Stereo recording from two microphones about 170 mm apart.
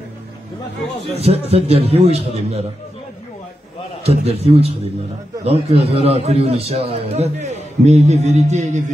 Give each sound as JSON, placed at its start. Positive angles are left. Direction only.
{"t": 1.1, "sound": "a man's voice", "side_deg": -35}
{"t": 4.0, "sound": "a man's voice", "side_deg": -35}